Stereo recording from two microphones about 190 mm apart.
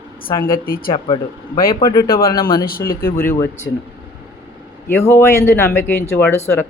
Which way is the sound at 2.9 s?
50° left (ahead or behind).